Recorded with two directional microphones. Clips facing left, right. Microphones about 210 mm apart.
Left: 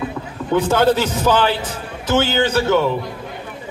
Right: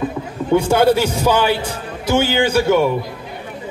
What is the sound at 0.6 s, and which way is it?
A man's voice, 10° right (ahead or behind).